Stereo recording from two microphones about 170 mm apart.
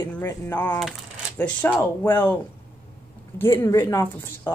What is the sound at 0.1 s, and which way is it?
Speech, 10° left (ahead or behind).